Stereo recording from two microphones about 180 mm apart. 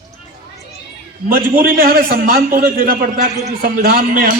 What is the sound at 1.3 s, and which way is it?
A man's voice, 50° right (ahead or behind).